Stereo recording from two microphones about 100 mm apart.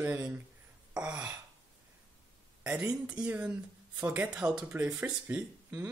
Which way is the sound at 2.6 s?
10° right (ahead or behind).